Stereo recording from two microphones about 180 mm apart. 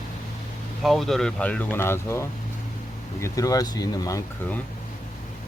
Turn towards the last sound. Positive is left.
turn(degrees=20)  # may be behind; listen again after turning